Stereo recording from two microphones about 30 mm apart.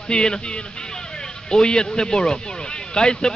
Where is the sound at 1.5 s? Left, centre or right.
Left.